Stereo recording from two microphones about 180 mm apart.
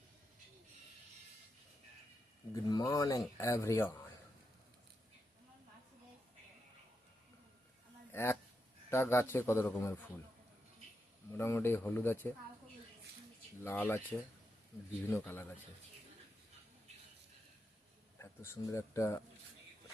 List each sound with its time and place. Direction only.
2.5 s speech: 20° left (ahead or behind)
8.1 s a sound: 15° left (ahead or behind)
8.9 s speech: 15° left (ahead or behind)
11.3 s speech: 15° left (ahead or behind)
13.7 s speech: 10° left (ahead or behind)
15.1 s speech: 10° left (ahead or behind)
18.2 s speech: 15° left (ahead or behind)